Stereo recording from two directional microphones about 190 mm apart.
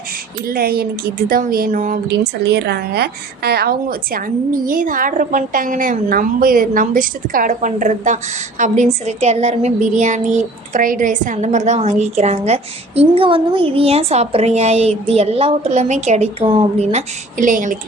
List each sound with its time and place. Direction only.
0.4 s a woman's voice: 55° right (ahead or behind)
2.0 s a woman's voice: 60° right (ahead or behind); by 17.7 s 45° right (ahead or behind)